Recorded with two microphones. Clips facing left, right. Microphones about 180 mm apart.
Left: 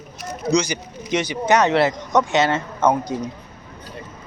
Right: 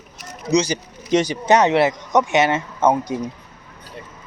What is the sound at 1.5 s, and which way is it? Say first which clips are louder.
Speech: right 2 dB; 20° right (ahead or behind).